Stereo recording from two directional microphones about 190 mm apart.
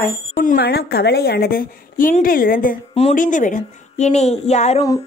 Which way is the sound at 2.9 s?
35° left (ahead or behind).